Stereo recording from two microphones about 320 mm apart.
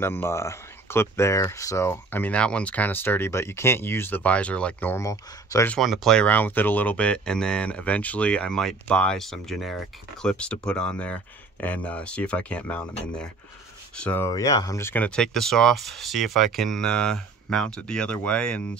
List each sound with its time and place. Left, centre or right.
0.0 s speech: centre